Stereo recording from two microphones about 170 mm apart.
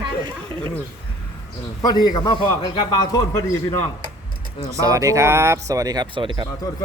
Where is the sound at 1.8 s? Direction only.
25° left (ahead or behind).